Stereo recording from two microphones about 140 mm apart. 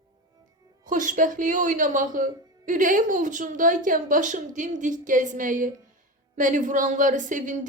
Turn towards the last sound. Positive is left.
turn(degrees=-65)  # may be behind; listen again after turning